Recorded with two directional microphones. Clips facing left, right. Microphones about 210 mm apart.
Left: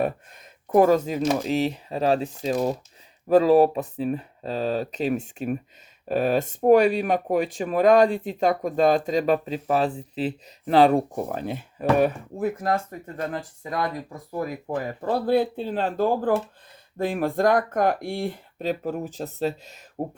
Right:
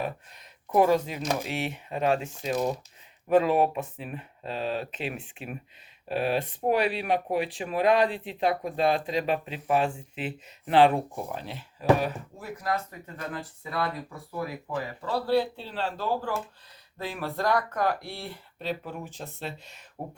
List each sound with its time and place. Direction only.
0.7 s speech: 45° left (ahead or behind)